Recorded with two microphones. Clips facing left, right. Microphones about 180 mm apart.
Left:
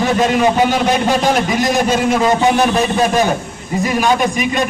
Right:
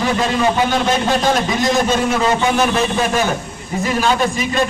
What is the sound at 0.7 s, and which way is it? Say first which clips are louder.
Speech: left 2 dB; 15° left (ahead or behind).